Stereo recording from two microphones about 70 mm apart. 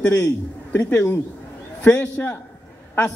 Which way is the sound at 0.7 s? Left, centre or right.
Left.